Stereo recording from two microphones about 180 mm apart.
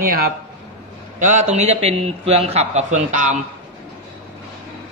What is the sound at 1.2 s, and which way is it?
A man's voice, 40° right (ahead or behind).